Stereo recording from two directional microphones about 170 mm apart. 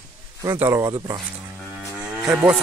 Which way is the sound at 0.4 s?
15° right (ahead or behind).